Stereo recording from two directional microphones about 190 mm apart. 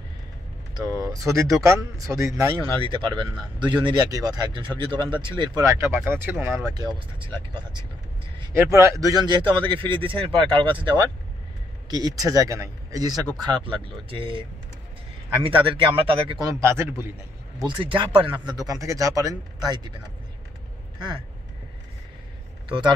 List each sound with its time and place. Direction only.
0.7 s speech: 20° right (ahead or behind)
15.4 s speech: 25° right (ahead or behind)
17.6 s speech: 25° right (ahead or behind)
22.7 s speech: 25° right (ahead or behind)